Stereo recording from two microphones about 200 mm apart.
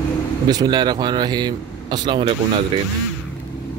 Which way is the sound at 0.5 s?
20° right (ahead or behind).